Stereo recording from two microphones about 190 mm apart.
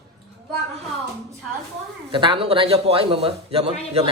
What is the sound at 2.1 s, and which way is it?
Speech, 25° right (ahead or behind).